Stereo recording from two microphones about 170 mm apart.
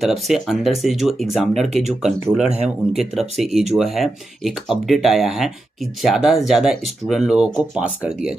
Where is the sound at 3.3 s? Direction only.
Centre (ahead or behind).